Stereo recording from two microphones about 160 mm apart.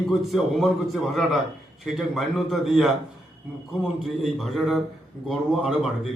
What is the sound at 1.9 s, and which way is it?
A man's voice, centre (ahead or behind).